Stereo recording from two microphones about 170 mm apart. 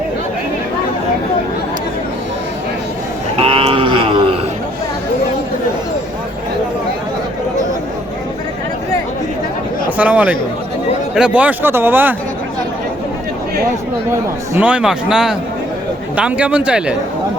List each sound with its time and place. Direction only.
3.4 s a sound: 35° right (ahead or behind)
10.0 s speech: 10° right (ahead or behind)
14.1 s speech: 10° right (ahead or behind)